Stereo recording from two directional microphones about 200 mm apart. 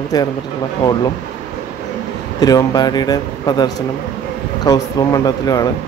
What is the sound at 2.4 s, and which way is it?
Speech, 20° left (ahead or behind).